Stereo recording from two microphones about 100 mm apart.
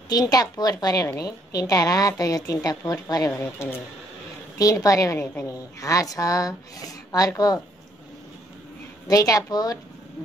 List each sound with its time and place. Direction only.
0.1 s a woman's voice: 40° left (ahead or behind)
4.6 s a woman's voice: 35° left (ahead or behind)
5.2 s speech: 20° left (ahead or behind)
5.5 s a woman's voice: 35° left (ahead or behind)
9.0 s a woman's voice: 35° left (ahead or behind)